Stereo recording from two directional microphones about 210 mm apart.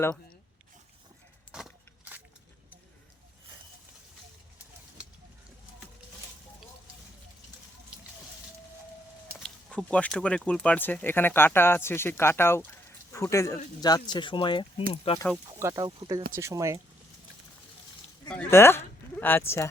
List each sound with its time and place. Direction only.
1.5 s a sound: 5° right (ahead or behind)
7.9 s water: 5° right (ahead or behind)
9.4 s speech: 5° left (ahead or behind); by 15.2 s 25° left (ahead or behind)
15.4 s speech: 15° right (ahead or behind)
18.5 s speech: 10° left (ahead or behind)